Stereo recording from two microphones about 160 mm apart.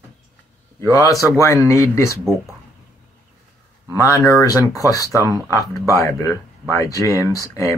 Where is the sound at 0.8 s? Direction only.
20° left (ahead or behind).